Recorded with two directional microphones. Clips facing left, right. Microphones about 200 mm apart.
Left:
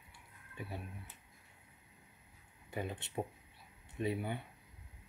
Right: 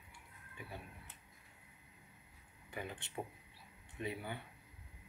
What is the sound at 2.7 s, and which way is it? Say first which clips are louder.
Speech: left 5 dB; 20° left (ahead or behind).